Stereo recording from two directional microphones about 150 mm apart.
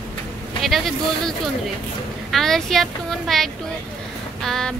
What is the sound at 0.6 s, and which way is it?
Speech, centre (ahead or behind).